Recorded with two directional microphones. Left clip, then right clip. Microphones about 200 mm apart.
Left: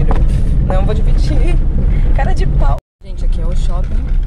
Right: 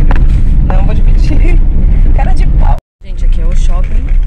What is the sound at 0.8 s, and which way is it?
Speech, centre (ahead or behind).